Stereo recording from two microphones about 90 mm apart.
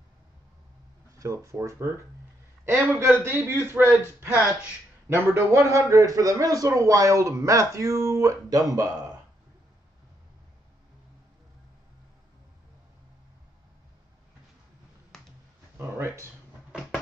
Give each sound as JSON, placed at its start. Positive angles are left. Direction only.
{"t": 1.1, "sound": "a man's voice", "side_deg": -40}
{"t": 4.3, "sound": "speech", "side_deg": -15}
{"t": 5.0, "sound": "a man's voice", "side_deg": -25}